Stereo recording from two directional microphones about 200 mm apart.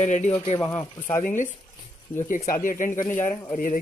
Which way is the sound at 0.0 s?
35° left (ahead or behind).